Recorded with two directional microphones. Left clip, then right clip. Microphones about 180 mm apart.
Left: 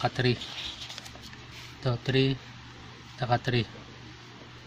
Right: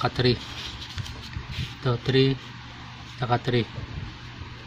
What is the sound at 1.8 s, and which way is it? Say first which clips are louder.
Speech: right 4 dB; 20° left (ahead or behind).